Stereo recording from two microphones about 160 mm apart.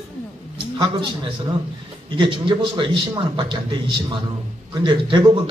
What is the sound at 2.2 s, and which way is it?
A man's voice, 30° right (ahead or behind).